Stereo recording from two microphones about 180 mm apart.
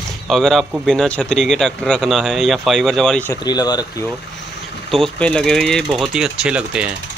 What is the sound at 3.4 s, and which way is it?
Speech, 20° left (ahead or behind).